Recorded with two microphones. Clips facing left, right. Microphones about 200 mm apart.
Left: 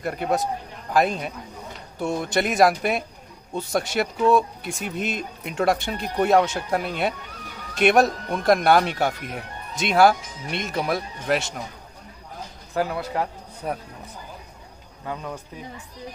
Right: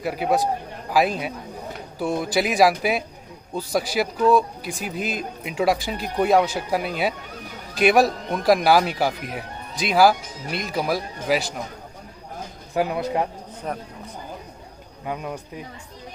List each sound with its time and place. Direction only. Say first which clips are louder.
0.0 s a man's voice: right 2 dB; 5° right (ahead or behind)
12.7 s a man's voice: right 2 dB; 20° right (ahead or behind)
13.6 s speech: left 1 dB; 5° left (ahead or behind)
15.0 s speech: right 2 dB; 15° right (ahead or behind)